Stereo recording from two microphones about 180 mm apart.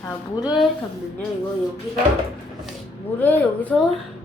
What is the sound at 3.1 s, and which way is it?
Speech, 10° left (ahead or behind).